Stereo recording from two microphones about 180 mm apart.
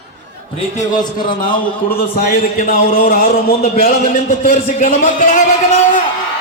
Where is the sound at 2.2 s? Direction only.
55° left (ahead or behind).